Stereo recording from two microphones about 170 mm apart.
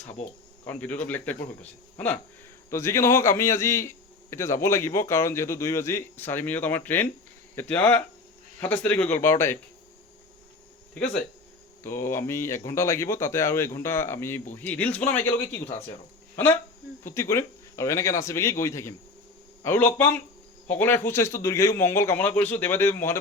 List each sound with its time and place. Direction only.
0.6 s a man's voice: 10° left (ahead or behind)
11.8 s a man's voice: 15° left (ahead or behind)